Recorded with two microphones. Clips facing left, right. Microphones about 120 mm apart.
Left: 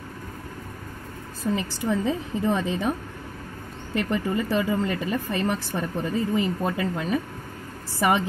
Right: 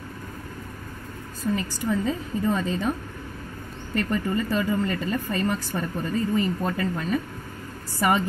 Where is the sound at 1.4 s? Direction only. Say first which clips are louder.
Even; 20° left (ahead or behind).